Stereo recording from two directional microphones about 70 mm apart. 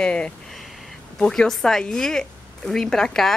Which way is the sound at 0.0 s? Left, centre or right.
Centre.